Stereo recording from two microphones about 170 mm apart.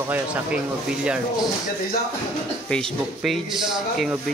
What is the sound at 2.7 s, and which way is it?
Speech, centre (ahead or behind).